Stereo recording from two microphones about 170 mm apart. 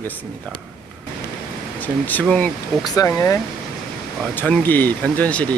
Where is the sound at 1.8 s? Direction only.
10° left (ahead or behind).